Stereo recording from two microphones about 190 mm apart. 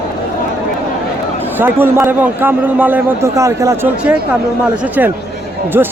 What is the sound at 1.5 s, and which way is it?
A man's voice, 10° right (ahead or behind).